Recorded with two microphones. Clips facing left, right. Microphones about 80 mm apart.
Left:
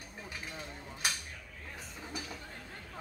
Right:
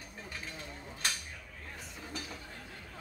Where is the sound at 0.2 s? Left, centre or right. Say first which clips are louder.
Left 1 dB; centre.